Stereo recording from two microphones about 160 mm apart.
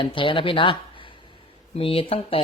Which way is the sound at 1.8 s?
35° left (ahead or behind).